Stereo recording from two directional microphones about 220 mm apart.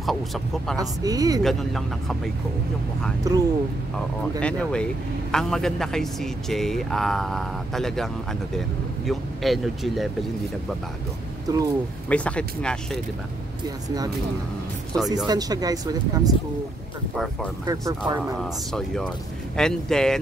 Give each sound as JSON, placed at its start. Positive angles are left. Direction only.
{"t": 0.0, "sound": "speech", "side_deg": 0}
{"t": 0.7, "sound": "speech", "side_deg": -15}
{"t": 1.4, "sound": "speech", "side_deg": 0}
{"t": 3.3, "sound": "speech", "side_deg": -15}
{"t": 4.4, "sound": "speech", "side_deg": 5}
{"t": 11.4, "sound": "speech", "side_deg": -15}
{"t": 12.1, "sound": "speech", "side_deg": 5}
{"t": 13.8, "sound": "speech", "side_deg": -15}
{"t": 15.2, "sound": "speech", "side_deg": -15}
{"t": 17.6, "sound": "speech", "side_deg": -15}
{"t": 18.4, "sound": "speech", "side_deg": 0}